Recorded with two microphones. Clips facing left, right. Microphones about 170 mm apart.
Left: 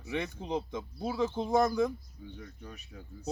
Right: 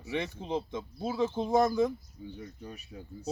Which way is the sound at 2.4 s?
20° right (ahead or behind).